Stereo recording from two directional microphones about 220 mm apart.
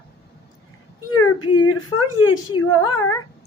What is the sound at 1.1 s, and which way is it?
Whimper, 90° left.